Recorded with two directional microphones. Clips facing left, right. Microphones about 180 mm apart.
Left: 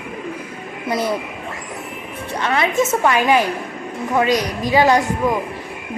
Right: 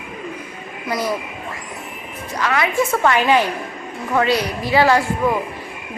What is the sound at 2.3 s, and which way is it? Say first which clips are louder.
A woman's voice: left 1 dB; 25° left (ahead or behind).